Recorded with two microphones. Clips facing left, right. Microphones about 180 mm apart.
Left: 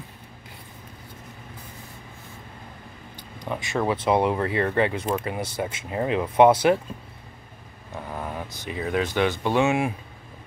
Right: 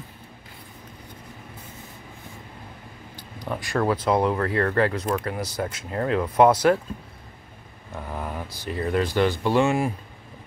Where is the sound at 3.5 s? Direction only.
5° left (ahead or behind).